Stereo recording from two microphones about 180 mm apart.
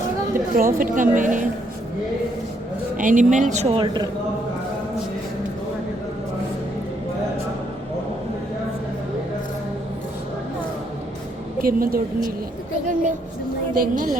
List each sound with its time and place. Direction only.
0.5 s a woman's voice: 50° right (ahead or behind)
3.0 s a woman's voice: 45° right (ahead or behind)
11.6 s a woman's voice: 55° right (ahead or behind)